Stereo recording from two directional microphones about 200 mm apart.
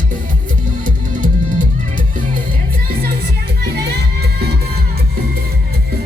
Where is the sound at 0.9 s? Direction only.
40° right (ahead or behind).